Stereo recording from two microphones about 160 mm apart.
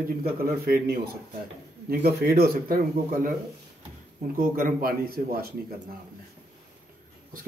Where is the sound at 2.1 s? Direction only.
75° right (ahead or behind).